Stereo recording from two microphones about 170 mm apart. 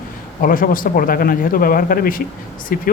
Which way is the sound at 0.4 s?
55° left (ahead or behind).